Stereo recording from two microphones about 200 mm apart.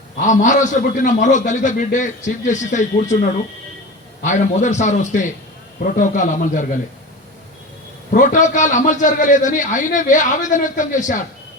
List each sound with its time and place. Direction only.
0.2 s a man's voice: 40° left (ahead or behind)
4.2 s a man's voice: 35° left (ahead or behind)
8.1 s a man's voice: 40° left (ahead or behind)